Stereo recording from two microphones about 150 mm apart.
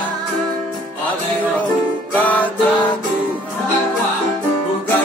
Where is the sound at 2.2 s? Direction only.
10° left (ahead or behind).